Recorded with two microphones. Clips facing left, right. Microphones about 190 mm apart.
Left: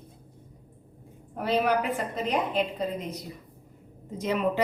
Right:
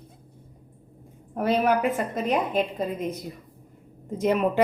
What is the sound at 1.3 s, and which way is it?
Speech, 45° right (ahead or behind).